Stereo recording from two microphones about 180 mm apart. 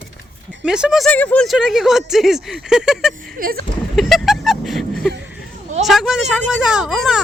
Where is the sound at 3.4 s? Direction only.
55° right (ahead or behind).